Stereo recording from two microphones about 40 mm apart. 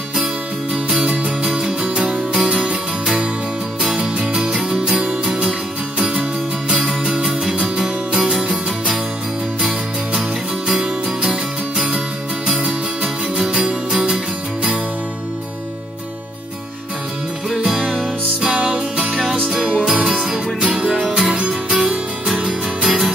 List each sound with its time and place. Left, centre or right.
0.8 s music: centre
4.3 s music: centre
7.5 s music: centre
9.6 s music: centre
12.6 s music: centre
13.5 s music: right
18.4 s music: right
21.6 s music: centre
22.4 s music: right
22.8 s music: centre